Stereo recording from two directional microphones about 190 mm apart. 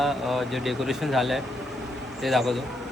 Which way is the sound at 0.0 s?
Centre (ahead or behind).